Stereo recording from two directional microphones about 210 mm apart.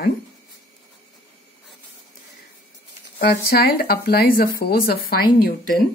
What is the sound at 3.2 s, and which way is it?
Speech, 45° left (ahead or behind).